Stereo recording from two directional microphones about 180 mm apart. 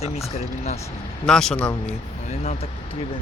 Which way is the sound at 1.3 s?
5° left (ahead or behind).